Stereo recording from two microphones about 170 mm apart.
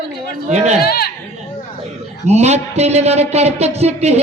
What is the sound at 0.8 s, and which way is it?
Speech, 65° left (ahead or behind).